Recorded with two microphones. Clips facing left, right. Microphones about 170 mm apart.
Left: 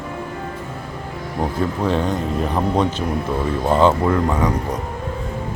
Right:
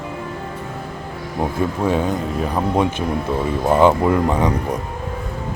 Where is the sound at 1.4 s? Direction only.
10° right (ahead or behind).